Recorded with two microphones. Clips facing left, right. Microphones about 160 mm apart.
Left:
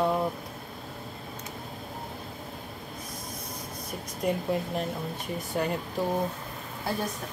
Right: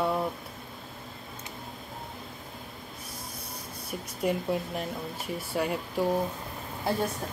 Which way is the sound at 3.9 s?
5° right (ahead or behind).